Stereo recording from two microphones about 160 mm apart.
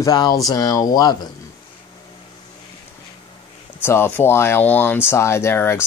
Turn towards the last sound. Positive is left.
turn(degrees=15)  # may be behind; listen again after turning